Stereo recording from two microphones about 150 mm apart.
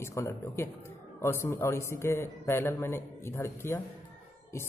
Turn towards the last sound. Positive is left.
turn(degrees=15)  # may be behind; listen again after turning